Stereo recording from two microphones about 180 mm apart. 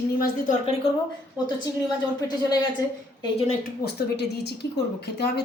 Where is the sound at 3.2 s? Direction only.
35° left (ahead or behind).